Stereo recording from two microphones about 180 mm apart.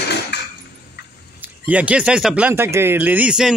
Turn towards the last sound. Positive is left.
turn(degrees=-5)  # may be behind; listen again after turning